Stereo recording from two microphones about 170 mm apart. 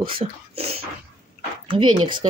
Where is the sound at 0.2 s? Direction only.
15° right (ahead or behind).